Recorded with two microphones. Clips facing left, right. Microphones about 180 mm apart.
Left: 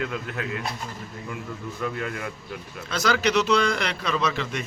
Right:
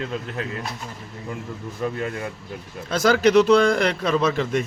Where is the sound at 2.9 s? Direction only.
50° right (ahead or behind).